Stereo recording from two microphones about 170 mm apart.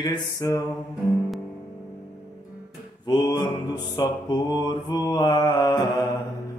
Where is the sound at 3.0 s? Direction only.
25° left (ahead or behind).